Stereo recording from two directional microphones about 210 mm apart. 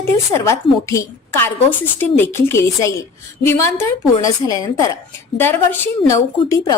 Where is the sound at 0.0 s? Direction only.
15° left (ahead or behind).